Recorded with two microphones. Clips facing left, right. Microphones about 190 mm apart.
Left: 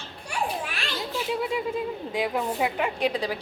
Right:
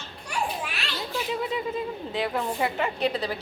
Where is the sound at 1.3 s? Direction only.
10° left (ahead or behind).